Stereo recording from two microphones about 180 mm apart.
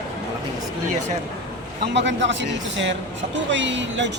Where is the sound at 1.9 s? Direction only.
85° right.